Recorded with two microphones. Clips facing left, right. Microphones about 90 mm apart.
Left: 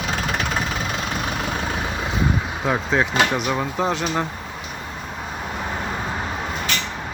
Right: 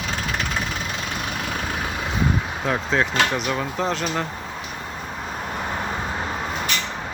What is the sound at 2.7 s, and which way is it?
Speech, 10° left (ahead or behind).